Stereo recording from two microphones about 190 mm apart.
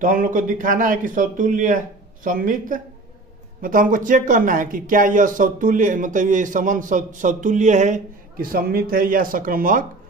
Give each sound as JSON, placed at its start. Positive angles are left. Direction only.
{"t": 0.0, "sound": "speech", "side_deg": -45}